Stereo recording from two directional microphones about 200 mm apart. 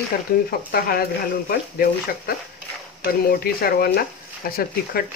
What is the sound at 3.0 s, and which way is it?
Speech, 50° left (ahead or behind).